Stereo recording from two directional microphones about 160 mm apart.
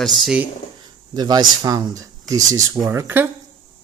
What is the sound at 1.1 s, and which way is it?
Speech, 25° right (ahead or behind).